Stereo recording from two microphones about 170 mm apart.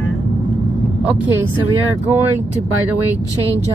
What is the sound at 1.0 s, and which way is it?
Speech, 10° right (ahead or behind).